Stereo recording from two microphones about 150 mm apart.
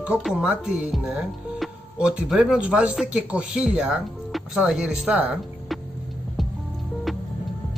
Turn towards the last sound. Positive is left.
turn(degrees=0)  # may be behind; listen again after turning